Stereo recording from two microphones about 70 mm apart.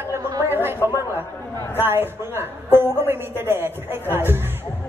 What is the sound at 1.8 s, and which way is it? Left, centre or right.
A woman's voice, right.